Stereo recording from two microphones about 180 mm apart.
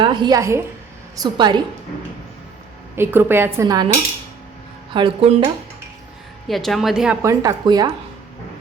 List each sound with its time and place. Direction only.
0.0 s a woman's voice: 25° right (ahead or behind)
2.9 s speech: 10° right (ahead or behind)
4.9 s speech: 30° right (ahead or behind)
6.5 s a woman's voice: centre (ahead or behind)
7.2 s speech: 20° right (ahead or behind)